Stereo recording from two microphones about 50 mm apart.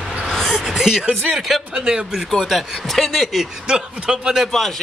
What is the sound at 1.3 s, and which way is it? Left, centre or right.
Speech, centre.